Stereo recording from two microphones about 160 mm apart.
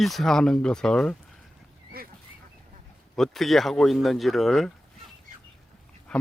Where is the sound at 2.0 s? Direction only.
70° right (ahead or behind).